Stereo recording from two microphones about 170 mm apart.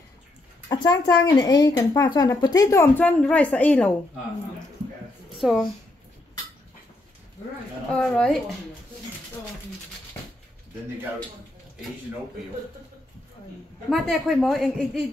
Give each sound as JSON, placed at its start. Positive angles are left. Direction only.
{"t": 0.7, "sound": "speech", "side_deg": 25}
{"t": 5.4, "sound": "a woman's voice", "side_deg": 0}
{"t": 7.9, "sound": "a woman's voice", "side_deg": 5}
{"t": 13.8, "sound": "a woman's voice", "side_deg": 0}